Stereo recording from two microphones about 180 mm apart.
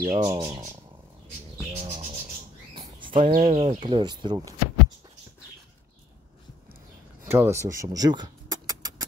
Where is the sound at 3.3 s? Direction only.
40° right (ahead or behind).